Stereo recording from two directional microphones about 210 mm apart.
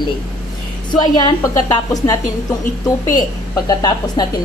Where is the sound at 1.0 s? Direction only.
20° left (ahead or behind).